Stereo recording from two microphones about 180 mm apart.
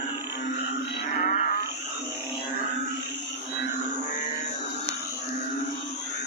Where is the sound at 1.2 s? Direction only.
45° left (ahead or behind).